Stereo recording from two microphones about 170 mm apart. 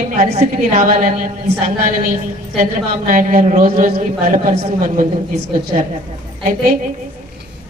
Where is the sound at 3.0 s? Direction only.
50° right (ahead or behind).